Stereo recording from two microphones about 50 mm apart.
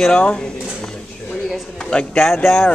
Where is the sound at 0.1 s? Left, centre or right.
Left.